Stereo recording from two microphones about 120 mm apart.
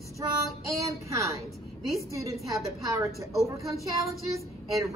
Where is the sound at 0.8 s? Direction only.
25° right (ahead or behind).